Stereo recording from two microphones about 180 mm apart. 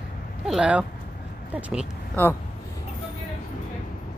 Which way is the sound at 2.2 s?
10° left (ahead or behind).